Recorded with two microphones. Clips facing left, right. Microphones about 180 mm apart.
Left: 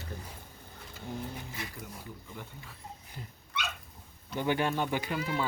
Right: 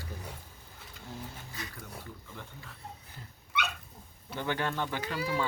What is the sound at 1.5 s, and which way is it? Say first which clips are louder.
Speech: left 1 dB; 20° left (ahead or behind).